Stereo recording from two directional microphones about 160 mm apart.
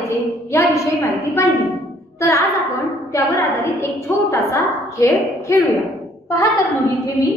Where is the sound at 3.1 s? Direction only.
20° left (ahead or behind).